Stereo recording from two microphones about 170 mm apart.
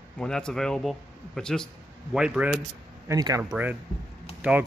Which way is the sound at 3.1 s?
20° right (ahead or behind).